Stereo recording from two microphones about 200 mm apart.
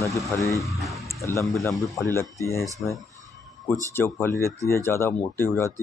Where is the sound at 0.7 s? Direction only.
Centre (ahead or behind).